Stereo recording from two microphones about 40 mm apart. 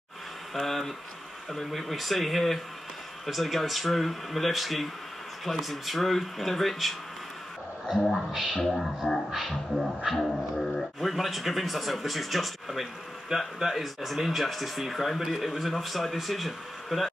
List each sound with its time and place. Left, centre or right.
0.6 s speech: centre
8.5 s speech: centre